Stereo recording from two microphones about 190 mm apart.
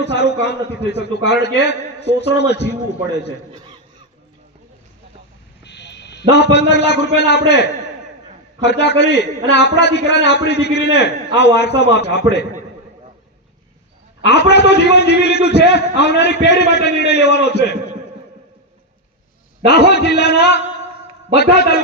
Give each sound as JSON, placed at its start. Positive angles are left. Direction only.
{"t": 0.0, "sound": "a man's voice", "side_deg": 60}
{"t": 5.6, "sound": "buzzer", "side_deg": 65}
{"t": 6.3, "sound": "a man's voice", "side_deg": 60}
{"t": 14.3, "sound": "a man's voice", "side_deg": 60}
{"t": 20.0, "sound": "a man's voice", "side_deg": 60}